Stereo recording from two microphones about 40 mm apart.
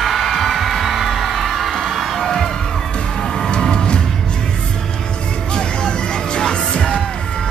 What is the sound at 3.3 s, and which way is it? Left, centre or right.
Music, centre.